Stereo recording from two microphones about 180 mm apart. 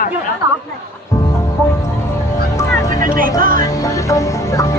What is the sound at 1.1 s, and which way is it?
Music, 15° left (ahead or behind).